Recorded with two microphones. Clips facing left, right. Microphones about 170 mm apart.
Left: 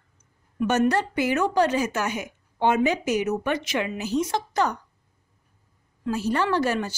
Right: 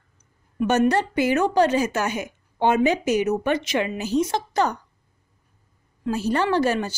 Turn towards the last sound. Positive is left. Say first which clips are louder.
# right 2 dB
turn(degrees=-30)  # may be behind; listen again after turning